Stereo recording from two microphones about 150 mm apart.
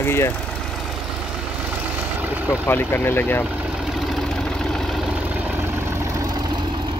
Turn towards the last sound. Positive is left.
turn(degrees=-25)  # may be behind; listen again after turning